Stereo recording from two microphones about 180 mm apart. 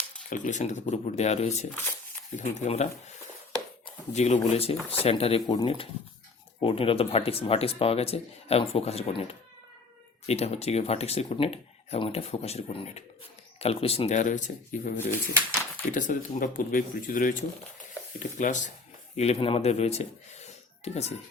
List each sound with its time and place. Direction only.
0.3 s speech: 45° left (ahead or behind)
4.1 s speech: 40° left (ahead or behind)
15.9 s speech: 45° left (ahead or behind)